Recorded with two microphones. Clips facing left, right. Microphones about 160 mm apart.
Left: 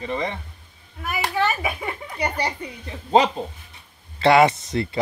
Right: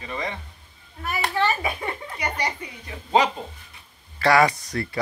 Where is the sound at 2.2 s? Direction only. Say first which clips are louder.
Left 3 dB; 30° left (ahead or behind).